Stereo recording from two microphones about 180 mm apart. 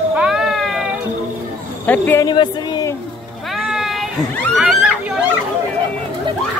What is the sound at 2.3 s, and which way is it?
Speech, 25° left (ahead or behind).